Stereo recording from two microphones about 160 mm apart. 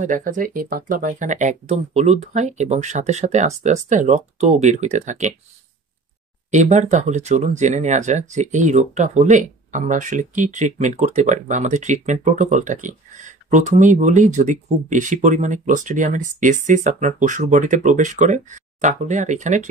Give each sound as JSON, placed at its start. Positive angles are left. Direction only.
{"t": 0.0, "sound": "speech", "side_deg": -55}
{"t": 6.5, "sound": "speech", "side_deg": -45}